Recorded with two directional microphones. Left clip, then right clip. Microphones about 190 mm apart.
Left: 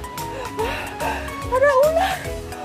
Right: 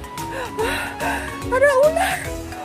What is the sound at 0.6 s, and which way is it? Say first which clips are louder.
Speech: right 2 dB; 20° right (ahead or behind).